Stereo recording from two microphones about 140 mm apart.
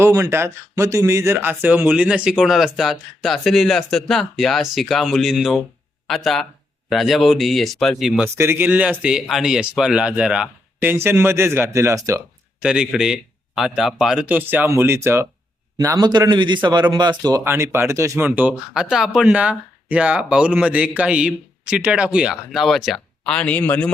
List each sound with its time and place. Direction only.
0.0 s speech: 20° right (ahead or behind); by 8.2 s centre (ahead or behind)
8.2 s speech: 15° right (ahead or behind)
12.6 s speech: 5° right (ahead or behind); by 17.4 s 30° right (ahead or behind)
17.4 s speech: 15° right (ahead or behind); by 23.9 s 10° left (ahead or behind)